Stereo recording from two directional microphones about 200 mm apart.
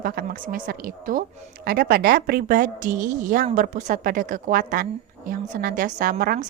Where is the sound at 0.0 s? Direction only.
45° right (ahead or behind).